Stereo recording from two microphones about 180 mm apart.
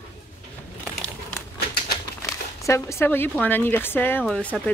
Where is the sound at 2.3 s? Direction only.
15° left (ahead or behind).